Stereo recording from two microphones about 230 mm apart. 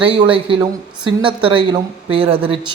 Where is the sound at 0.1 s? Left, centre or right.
Right.